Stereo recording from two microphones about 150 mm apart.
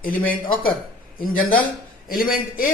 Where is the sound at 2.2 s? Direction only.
70° left (ahead or behind).